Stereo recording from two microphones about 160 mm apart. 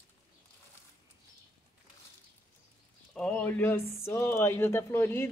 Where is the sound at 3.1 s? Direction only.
5° left (ahead or behind).